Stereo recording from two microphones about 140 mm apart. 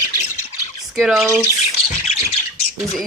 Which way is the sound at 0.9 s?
Centre (ahead or behind).